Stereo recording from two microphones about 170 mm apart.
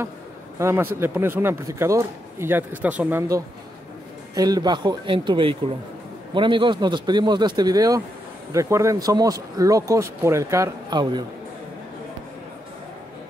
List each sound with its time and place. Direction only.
0.6 s speech: 15° right (ahead or behind)